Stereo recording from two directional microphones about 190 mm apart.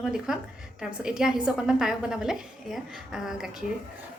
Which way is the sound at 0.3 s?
5° right (ahead or behind).